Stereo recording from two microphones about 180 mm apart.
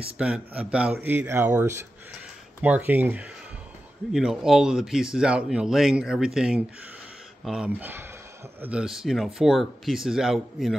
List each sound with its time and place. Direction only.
0.2 s a man's voice: 5° right (ahead or behind)